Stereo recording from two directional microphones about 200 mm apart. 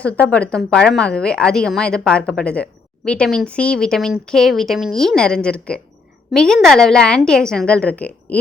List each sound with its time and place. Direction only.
0.0 s a woman's voice: 5° left (ahead or behind)